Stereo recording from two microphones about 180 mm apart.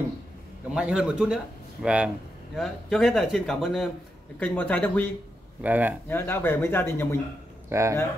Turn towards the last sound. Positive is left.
turn(degrees=-15)  # may be behind; listen again after turning